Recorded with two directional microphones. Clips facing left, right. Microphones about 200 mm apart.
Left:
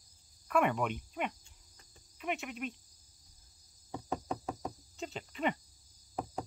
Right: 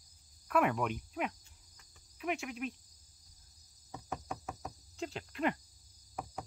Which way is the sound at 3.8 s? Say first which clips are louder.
Left 5 dB; 30° left (ahead or behind).